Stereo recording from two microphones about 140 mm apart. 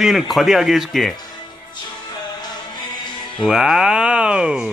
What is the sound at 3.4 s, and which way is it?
Speech, centre (ahead or behind).